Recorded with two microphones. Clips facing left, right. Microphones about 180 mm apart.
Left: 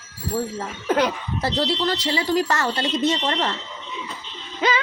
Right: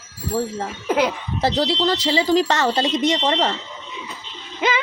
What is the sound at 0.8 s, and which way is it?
Speech, 10° right (ahead or behind).